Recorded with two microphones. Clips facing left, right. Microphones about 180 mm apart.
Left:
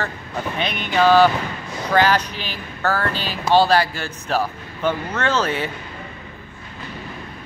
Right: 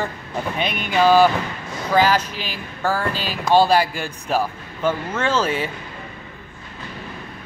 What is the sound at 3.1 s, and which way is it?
Speech, 40° right (ahead or behind).